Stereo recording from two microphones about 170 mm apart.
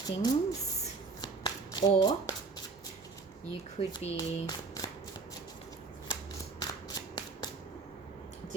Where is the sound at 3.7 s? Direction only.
30° left (ahead or behind).